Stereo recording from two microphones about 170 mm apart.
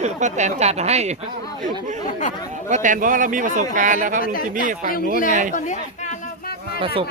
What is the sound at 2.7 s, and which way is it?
A man's voice, 45° right (ahead or behind).